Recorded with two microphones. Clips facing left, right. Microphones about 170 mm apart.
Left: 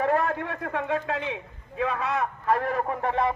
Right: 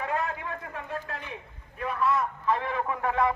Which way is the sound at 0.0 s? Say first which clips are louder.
Left 6 dB; 60° left (ahead or behind).